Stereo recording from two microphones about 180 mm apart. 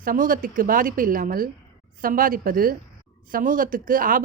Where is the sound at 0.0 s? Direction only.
50° right (ahead or behind).